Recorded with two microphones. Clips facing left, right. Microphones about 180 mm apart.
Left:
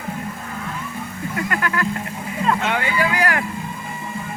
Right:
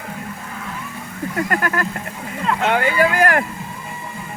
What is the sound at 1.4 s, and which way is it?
Speech, 45° right (ahead or behind).